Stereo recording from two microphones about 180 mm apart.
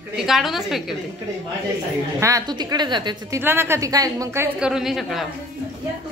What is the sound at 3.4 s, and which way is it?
A woman's voice, 10° right (ahead or behind).